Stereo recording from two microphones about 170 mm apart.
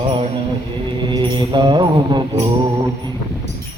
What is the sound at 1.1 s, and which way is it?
Mantra, 25° right (ahead or behind).